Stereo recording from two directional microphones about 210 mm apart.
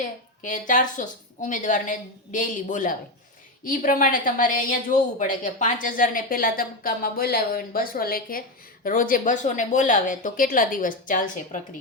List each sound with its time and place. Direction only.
0.0 s a woman's voice: 40° left (ahead or behind)